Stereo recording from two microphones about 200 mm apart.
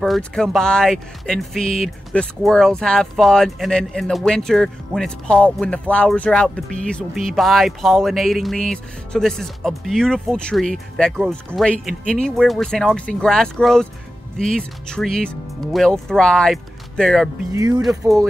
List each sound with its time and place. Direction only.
0.0 s speech: centre (ahead or behind)
18.0 s speech: 15° right (ahead or behind)